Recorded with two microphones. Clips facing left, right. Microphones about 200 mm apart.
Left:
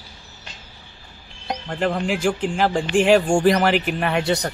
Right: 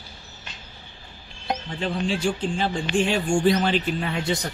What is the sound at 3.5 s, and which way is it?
Speech, 80° left.